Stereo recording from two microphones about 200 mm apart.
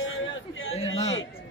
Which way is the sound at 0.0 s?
75° left (ahead or behind).